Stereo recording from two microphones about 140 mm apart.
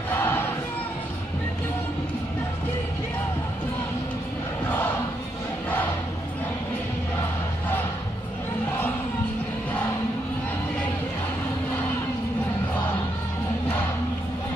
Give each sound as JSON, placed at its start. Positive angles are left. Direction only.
{"t": 0.1, "sound": "crowd", "side_deg": 15}